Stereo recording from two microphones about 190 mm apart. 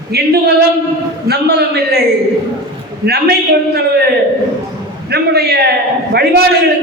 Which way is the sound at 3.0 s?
55° right (ahead or behind).